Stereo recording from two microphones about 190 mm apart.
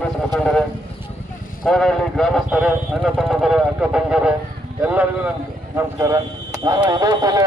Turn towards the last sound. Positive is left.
turn(degrees=-20)  # may be behind; listen again after turning